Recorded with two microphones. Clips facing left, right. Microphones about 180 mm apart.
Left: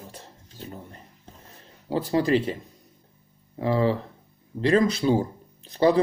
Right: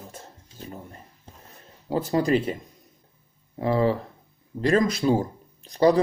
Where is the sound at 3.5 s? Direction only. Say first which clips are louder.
Right 1 dB; 35° right (ahead or behind).